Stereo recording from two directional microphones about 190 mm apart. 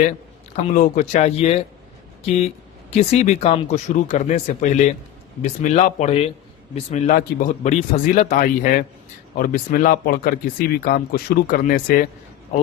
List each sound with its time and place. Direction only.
0.5 s speech: 45° left (ahead or behind)
2.9 s speech: 35° left (ahead or behind)